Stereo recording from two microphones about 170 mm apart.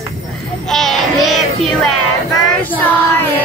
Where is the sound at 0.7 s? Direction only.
Centre (ahead or behind).